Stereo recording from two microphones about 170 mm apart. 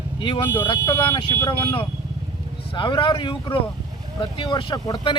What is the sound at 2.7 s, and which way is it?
Speech, 30° left (ahead or behind).